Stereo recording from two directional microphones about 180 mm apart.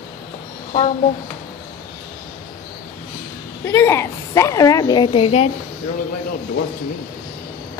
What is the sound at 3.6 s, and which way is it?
A woman's voice, 15° left (ahead or behind).